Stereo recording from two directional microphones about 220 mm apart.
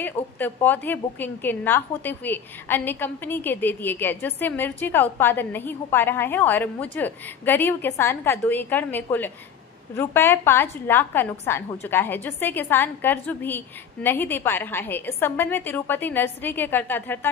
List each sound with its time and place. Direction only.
0.0 s a woman's voice: 10° left (ahead or behind)